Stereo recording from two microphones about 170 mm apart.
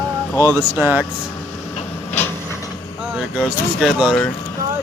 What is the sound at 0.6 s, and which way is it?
Speech, 10° right (ahead or behind).